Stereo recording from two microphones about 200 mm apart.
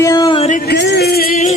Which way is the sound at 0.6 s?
60° left (ahead or behind).